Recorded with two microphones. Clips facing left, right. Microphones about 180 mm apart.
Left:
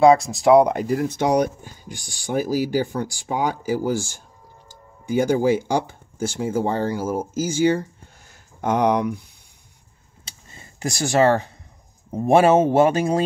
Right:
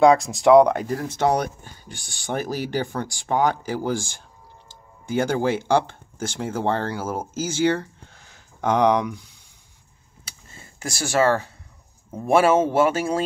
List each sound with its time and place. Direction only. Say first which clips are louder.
0.0 s speech: left 1 dB; centre (ahead or behind)
0.8 s speech: left 1 dB; 15° left (ahead or behind)
4.6 s a sound: left 4 dB; 10° left (ahead or behind)
5.7 s speech: right 2 dB; 10° left (ahead or behind)
10.8 s speech: left 3 dB; 20° left (ahead or behind)